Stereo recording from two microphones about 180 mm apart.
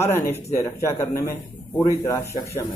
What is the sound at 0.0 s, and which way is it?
Speech, 15° left (ahead or behind).